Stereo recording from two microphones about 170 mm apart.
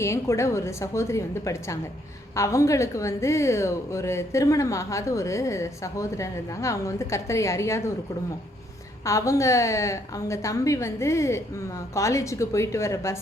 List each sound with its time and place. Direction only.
0.0 s a woman's voice: 15° left (ahead or behind)
9.0 s a woman's voice: 20° left (ahead or behind)